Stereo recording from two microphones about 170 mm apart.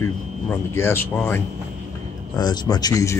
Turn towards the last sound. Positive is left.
turn(degrees=20)  # may be behind; listen again after turning